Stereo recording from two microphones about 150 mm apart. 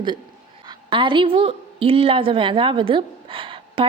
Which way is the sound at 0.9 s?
35° right (ahead or behind).